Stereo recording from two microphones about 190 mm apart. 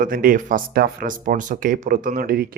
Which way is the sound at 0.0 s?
50° right (ahead or behind).